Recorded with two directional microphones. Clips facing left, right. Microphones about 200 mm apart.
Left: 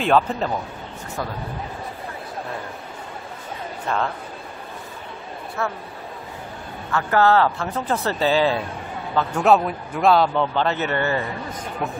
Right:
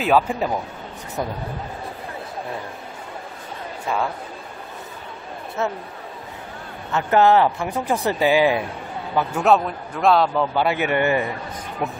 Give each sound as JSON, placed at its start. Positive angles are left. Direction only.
{"t": 0.0, "sound": "a man's voice", "side_deg": -10}
{"t": 3.8, "sound": "a man's voice", "side_deg": -10}
{"t": 5.6, "sound": "speech", "side_deg": -20}
{"t": 6.9, "sound": "a man's voice", "side_deg": -20}